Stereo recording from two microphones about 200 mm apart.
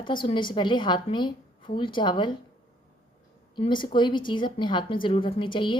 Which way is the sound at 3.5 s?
25° left (ahead or behind).